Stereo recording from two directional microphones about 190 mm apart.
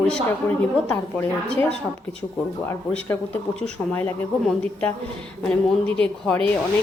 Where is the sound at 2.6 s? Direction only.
10° left (ahead or behind).